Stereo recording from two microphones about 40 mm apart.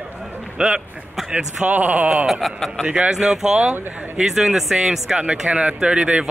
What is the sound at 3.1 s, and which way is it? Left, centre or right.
Speech, centre.